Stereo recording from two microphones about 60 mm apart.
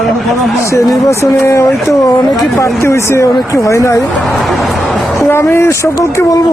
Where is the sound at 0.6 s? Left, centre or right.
Left.